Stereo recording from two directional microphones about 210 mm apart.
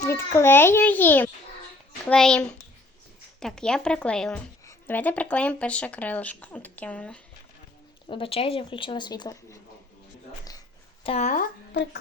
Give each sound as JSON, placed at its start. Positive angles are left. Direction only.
{"t": 0.0, "sound": "speech", "side_deg": 10}
{"t": 8.0, "sound": "speech", "side_deg": 25}
{"t": 11.0, "sound": "speech", "side_deg": 30}